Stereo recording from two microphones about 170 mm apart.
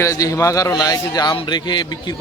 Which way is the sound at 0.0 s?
20° left (ahead or behind).